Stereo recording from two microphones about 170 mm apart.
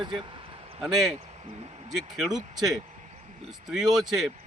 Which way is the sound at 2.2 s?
Centre (ahead or behind).